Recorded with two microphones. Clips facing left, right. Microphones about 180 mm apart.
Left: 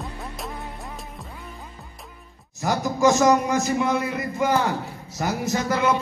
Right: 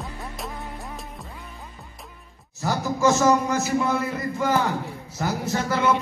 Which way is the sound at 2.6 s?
15° left (ahead or behind).